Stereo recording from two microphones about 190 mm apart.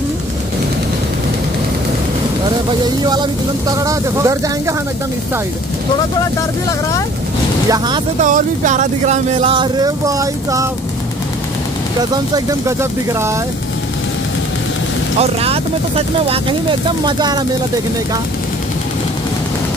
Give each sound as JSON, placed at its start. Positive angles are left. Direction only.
{"t": 3.7, "sound": "speech", "side_deg": -15}
{"t": 7.7, "sound": "speech", "side_deg": -20}
{"t": 8.2, "sound": "speech", "side_deg": -40}
{"t": 15.1, "sound": "speech", "side_deg": -30}